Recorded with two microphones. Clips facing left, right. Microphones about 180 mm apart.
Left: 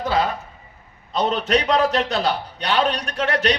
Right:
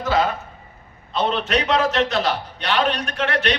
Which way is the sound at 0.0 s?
35° left (ahead or behind).